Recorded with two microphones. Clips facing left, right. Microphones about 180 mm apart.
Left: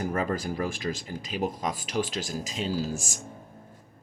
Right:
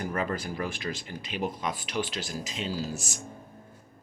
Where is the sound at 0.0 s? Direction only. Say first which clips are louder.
Left 2 dB; 40° left (ahead or behind).